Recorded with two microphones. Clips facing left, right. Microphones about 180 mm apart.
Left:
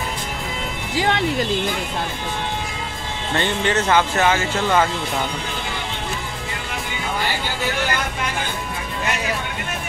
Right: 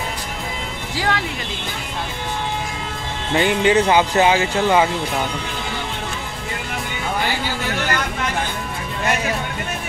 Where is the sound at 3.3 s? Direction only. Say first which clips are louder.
Right 5 dB; 15° right (ahead or behind).